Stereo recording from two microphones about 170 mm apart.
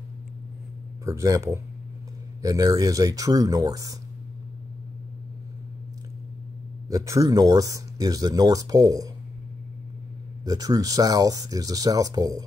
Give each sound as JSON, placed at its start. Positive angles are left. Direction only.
{"t": 1.0, "sound": "speech", "side_deg": -20}
{"t": 6.9, "sound": "speech", "side_deg": -20}
{"t": 10.4, "sound": "speech", "side_deg": -20}